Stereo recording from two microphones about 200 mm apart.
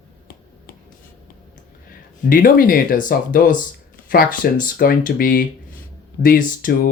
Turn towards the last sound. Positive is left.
turn(degrees=45)  # may be behind; listen again after turning